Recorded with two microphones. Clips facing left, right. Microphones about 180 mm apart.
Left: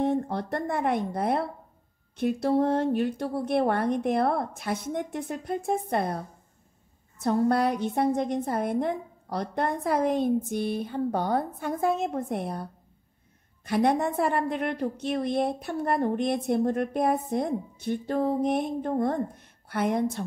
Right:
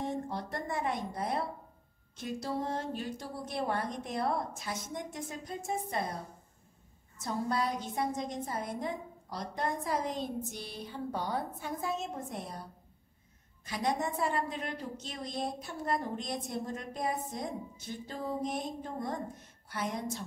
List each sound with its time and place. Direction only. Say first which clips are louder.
0.0 s a woman's voice: left 9 dB; 60° left (ahead or behind)
13.7 s a woman's voice: left 9 dB; 60° left (ahead or behind)